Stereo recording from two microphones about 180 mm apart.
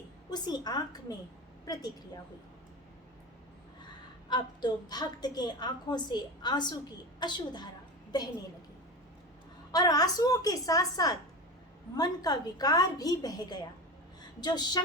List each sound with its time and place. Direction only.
0.3 s a woman's voice: 25° left (ahead or behind)
4.3 s a woman's voice: 25° left (ahead or behind)
9.7 s a woman's voice: 20° left (ahead or behind)